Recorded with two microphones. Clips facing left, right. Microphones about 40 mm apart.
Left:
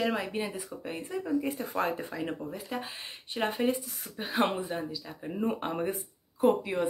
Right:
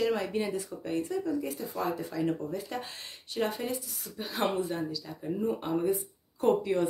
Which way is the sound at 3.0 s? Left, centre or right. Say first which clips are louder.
Right 2 dB; left.